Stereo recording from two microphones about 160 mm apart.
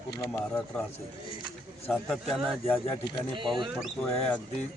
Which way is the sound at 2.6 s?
10° left (ahead or behind).